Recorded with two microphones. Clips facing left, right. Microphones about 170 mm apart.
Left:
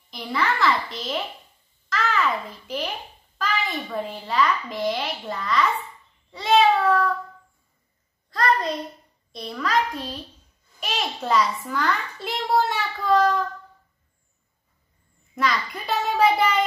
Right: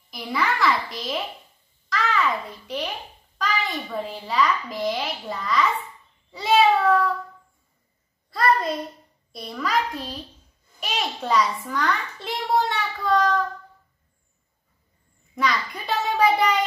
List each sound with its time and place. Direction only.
0.1 s a child's voice: centre (ahead or behind)
8.3 s a sound: 5° right (ahead or behind)
9.3 s a child's voice: 5° right (ahead or behind)
15.3 s a child's voice: centre (ahead or behind)